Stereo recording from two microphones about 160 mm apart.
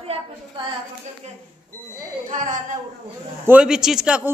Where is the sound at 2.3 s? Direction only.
50° right (ahead or behind).